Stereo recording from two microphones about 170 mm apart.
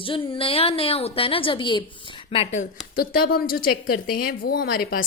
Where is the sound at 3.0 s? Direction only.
60° left (ahead or behind).